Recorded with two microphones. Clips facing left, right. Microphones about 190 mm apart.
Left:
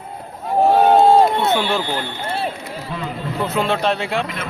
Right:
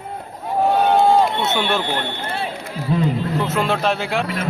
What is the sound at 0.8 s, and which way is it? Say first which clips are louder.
Run: left 4 dB; 40° left (ahead or behind).